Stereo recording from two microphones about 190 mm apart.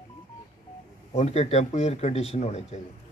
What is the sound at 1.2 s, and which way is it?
Speech, 35° left (ahead or behind).